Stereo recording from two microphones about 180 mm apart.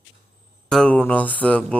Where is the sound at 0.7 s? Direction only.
5° left (ahead or behind).